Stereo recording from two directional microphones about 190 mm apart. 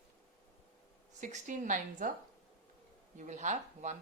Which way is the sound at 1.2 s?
40° right (ahead or behind).